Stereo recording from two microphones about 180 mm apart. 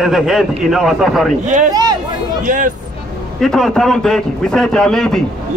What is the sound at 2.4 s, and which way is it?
Speech, 45° right (ahead or behind).